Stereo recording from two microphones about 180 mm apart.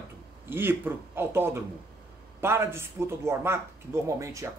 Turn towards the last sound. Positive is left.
turn(degrees=-15)  # may be behind; listen again after turning